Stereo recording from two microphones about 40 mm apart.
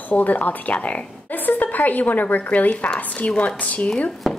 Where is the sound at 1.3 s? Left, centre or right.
Left.